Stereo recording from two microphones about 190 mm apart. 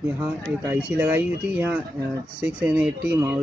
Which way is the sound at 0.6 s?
10° right (ahead or behind).